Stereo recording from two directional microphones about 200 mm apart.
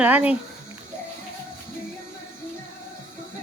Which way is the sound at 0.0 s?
5° right (ahead or behind).